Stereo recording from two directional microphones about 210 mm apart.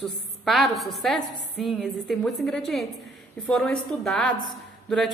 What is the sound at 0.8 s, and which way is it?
Speech, centre (ahead or behind).